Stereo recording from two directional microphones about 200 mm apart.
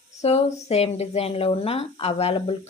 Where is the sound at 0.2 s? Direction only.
30° left (ahead or behind).